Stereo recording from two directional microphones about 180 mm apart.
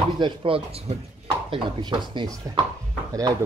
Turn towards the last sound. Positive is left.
turn(degrees=-20)  # may be behind; listen again after turning